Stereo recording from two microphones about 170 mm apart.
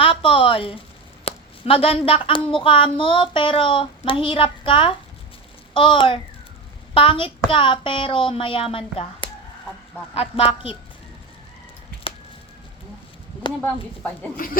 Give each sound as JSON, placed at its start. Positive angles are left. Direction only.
{"t": 0.0, "sound": "a woman's voice", "side_deg": 30}
{"t": 10.2, "sound": "speech", "side_deg": 35}
{"t": 14.4, "sound": "speech", "side_deg": 55}